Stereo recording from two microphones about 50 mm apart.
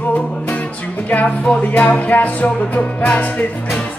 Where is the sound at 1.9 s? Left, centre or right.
Left.